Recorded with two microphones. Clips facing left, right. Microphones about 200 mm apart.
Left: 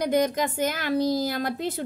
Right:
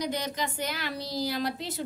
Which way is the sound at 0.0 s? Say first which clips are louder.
Left 8 dB; 50° left (ahead or behind).